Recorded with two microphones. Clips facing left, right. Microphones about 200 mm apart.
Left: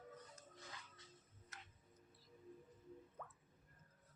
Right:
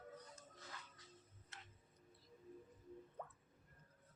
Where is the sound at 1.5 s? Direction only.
25° right (ahead or behind).